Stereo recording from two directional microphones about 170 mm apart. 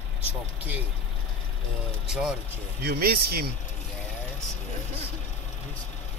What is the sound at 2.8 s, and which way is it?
Speech, 65° right (ahead or behind).